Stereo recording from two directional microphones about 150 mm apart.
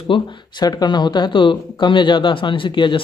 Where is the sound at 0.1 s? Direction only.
30° left (ahead or behind).